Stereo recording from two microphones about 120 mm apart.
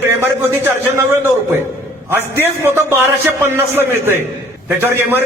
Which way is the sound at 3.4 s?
20° right (ahead or behind).